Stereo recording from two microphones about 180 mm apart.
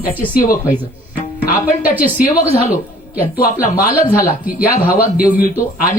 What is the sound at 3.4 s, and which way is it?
Speech, 50° left (ahead or behind).